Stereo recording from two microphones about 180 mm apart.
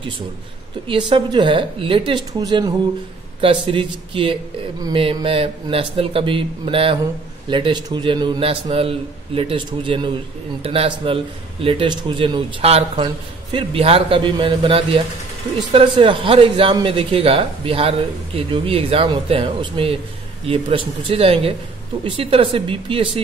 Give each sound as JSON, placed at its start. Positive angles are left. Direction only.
{"t": 0.8, "sound": "a man's voice", "side_deg": -30}